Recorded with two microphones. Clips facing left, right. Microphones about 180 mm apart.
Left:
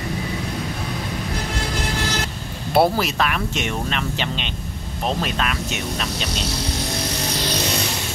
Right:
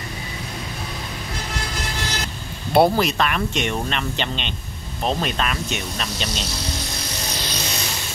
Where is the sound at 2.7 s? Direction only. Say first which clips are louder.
Right 1 dB; 5° left (ahead or behind).